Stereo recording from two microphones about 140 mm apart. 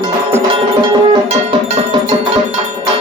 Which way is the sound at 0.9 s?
40° right (ahead or behind).